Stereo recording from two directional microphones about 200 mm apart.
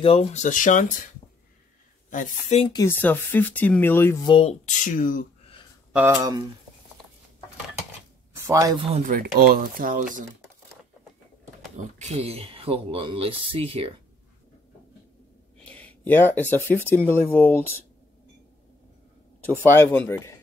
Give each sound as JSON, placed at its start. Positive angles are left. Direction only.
{"t": 0.0, "sound": "speech", "side_deg": 30}
{"t": 2.0, "sound": "speech", "side_deg": 40}
{"t": 2.6, "sound": "speech", "side_deg": 20}
{"t": 3.0, "sound": "speech", "side_deg": 10}
{"t": 4.3, "sound": "speech", "side_deg": 30}
{"t": 5.9, "sound": "speech", "side_deg": -15}
{"t": 8.4, "sound": "a man's voice", "side_deg": -15}
{"t": 8.9, "sound": "speech", "side_deg": -40}
{"t": 12.0, "sound": "speech", "side_deg": -30}
{"t": 15.6, "sound": "a sound", "side_deg": 5}
{"t": 16.9, "sound": "speech", "side_deg": 10}
{"t": 19.6, "sound": "speech", "side_deg": 10}